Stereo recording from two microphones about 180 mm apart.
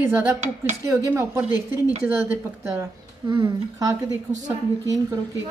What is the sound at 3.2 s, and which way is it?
A woman's voice, 25° right (ahead or behind).